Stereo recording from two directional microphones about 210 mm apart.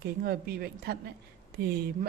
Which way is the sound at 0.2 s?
45° right (ahead or behind).